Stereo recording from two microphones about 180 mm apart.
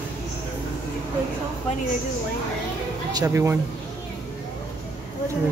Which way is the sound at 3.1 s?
15° right (ahead or behind).